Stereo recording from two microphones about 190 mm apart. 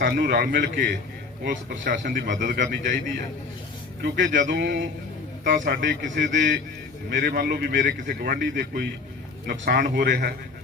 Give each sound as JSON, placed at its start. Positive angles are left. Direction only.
{"t": 0.0, "sound": "speech", "side_deg": -55}
{"t": 4.0, "sound": "speech", "side_deg": -55}
{"t": 5.5, "sound": "a man's voice", "side_deg": -45}
{"t": 7.9, "sound": "speech", "side_deg": -50}